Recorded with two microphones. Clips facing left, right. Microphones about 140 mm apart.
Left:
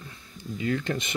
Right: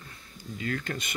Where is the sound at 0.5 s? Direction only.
20° left (ahead or behind).